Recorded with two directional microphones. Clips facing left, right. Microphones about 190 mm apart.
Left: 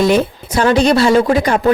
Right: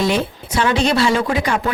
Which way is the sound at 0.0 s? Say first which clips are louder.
Left 6 dB; 45° left (ahead or behind).